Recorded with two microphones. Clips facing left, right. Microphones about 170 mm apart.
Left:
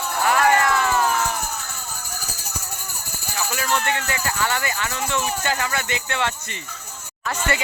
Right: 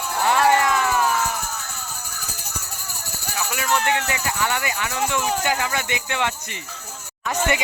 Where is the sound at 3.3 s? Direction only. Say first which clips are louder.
Right 1 dB; 5° right (ahead or behind).